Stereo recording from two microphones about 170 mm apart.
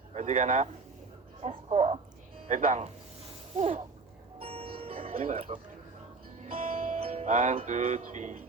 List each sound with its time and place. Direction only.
0.1 s speech: 40° right (ahead or behind)
4.4 s music: 35° right (ahead or behind)